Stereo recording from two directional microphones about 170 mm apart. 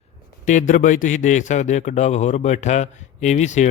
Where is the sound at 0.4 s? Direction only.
50° left (ahead or behind).